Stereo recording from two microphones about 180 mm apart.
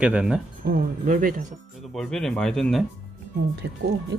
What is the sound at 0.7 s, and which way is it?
Speech, 50° right (ahead or behind).